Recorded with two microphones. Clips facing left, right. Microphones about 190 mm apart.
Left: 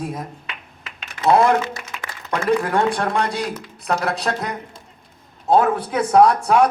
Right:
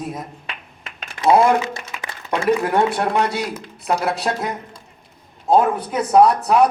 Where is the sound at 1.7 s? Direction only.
20° right (ahead or behind).